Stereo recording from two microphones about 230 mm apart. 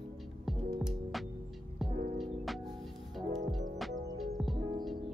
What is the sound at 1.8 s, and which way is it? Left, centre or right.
Music, centre.